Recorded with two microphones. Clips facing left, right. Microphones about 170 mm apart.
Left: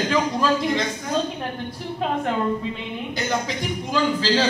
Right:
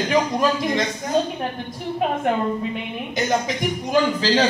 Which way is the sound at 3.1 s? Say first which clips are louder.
Right 4 dB; 20° right (ahead or behind).